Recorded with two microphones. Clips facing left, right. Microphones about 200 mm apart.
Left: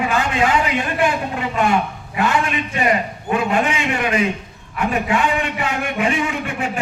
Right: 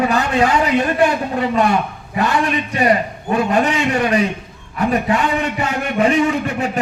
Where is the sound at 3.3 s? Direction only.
40° right (ahead or behind).